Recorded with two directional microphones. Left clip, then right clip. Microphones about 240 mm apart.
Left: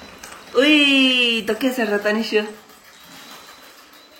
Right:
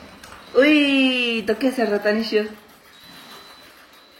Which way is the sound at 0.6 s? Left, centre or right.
Centre.